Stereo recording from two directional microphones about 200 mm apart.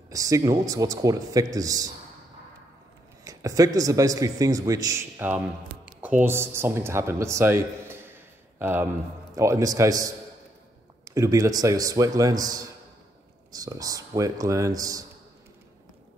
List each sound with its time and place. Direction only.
0.1 s a man's voice: 15° right (ahead or behind)
3.3 s a man's voice: 15° right (ahead or behind)